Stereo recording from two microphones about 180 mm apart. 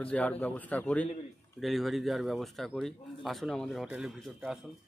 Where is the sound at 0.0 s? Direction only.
5° left (ahead or behind).